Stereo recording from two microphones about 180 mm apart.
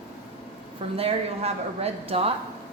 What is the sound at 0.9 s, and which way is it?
Speech, 35° right (ahead or behind).